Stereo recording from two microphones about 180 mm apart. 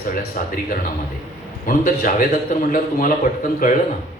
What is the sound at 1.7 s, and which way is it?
Speech, 50° left (ahead or behind).